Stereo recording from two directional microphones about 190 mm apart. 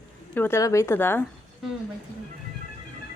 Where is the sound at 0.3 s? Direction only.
15° left (ahead or behind).